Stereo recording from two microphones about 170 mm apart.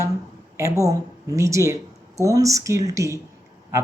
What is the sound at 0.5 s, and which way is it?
Speech, 20° right (ahead or behind).